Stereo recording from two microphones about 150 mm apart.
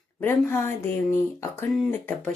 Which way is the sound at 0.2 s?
15° left (ahead or behind).